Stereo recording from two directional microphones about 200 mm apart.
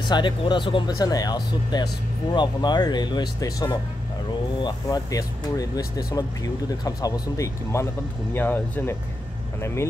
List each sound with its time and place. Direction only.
0.1 s speech: 25° left (ahead or behind)